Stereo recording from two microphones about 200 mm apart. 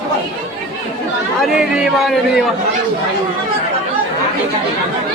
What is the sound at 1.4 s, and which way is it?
Speech, centre (ahead or behind).